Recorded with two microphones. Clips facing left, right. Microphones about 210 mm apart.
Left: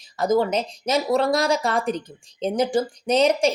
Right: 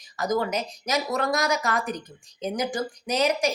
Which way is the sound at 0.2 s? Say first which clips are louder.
Left 5 dB; 25° left (ahead or behind).